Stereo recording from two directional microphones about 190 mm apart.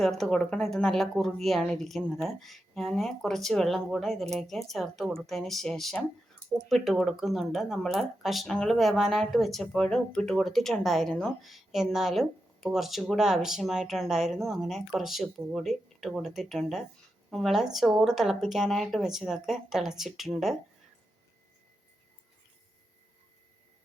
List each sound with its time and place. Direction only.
0.0 s speech: centre (ahead or behind)